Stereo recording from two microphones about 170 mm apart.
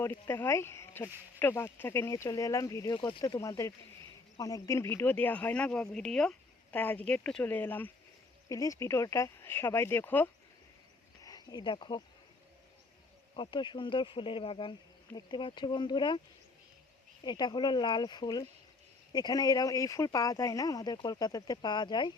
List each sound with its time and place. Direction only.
0.0 s speech: 15° left (ahead or behind); by 3.4 s 30° left (ahead or behind)
3.4 s speech: 20° left (ahead or behind)
11.2 s speech: 20° left (ahead or behind)
13.3 s speech: 30° left (ahead or behind)
17.2 s speech: 25° left (ahead or behind)